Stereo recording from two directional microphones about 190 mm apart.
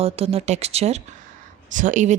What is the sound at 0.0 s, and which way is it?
A woman's voice, 30° right (ahead or behind).